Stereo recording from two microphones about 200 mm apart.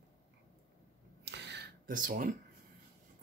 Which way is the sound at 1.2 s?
60° right (ahead or behind).